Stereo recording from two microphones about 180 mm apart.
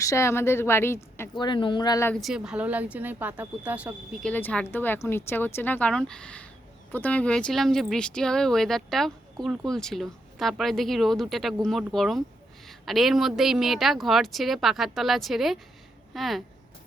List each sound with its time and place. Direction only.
0.0 s speech: 15° left (ahead or behind)
1.4 s speech: 25° left (ahead or behind)
2.2 s speech: 5° right (ahead or behind)
4.2 s speech: 10° left (ahead or behind)